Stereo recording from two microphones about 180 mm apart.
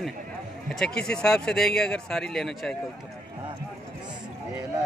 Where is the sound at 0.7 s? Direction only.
5° left (ahead or behind).